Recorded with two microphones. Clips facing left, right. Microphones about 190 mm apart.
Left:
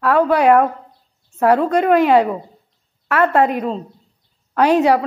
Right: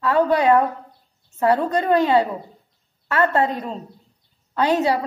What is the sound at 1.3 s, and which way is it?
Speech, 90° left.